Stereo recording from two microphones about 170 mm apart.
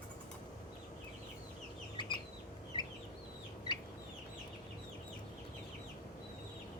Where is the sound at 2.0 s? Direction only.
25° left (ahead or behind).